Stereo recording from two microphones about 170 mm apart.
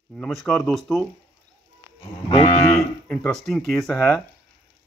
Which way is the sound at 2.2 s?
30° left (ahead or behind).